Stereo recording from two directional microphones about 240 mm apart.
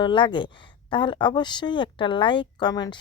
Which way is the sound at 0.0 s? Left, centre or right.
Centre.